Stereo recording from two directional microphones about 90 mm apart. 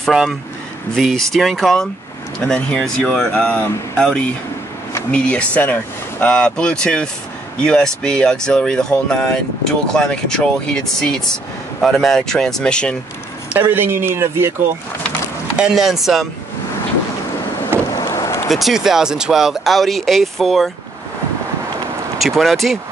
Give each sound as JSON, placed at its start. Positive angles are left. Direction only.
{"t": 0.0, "sound": "speech", "side_deg": -5}
{"t": 13.6, "sound": "speech", "side_deg": -25}
{"t": 15.5, "sound": "speech", "side_deg": -5}
{"t": 17.9, "sound": "vehicle", "side_deg": 40}
{"t": 18.5, "sound": "speech", "side_deg": -5}
{"t": 22.2, "sound": "speech", "side_deg": 0}